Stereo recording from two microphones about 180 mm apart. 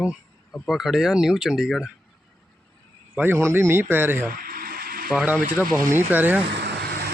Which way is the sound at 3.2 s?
15° right (ahead or behind).